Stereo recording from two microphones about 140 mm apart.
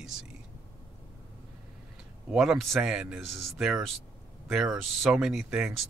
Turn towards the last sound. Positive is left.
turn(degrees=-5)  # may be behind; listen again after turning